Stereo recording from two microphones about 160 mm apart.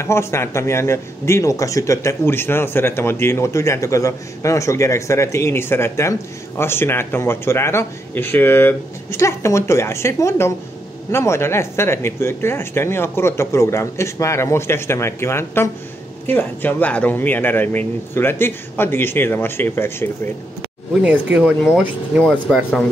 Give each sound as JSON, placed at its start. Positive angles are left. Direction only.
{"t": 0.0, "sound": "speech", "side_deg": 15}
{"t": 21.0, "sound": "speech", "side_deg": -5}